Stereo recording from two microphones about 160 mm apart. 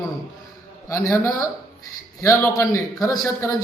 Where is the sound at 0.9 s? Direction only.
20° left (ahead or behind).